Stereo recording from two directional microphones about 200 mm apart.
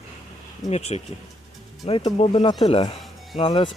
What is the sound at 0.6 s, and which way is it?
Speech, 35° left (ahead or behind).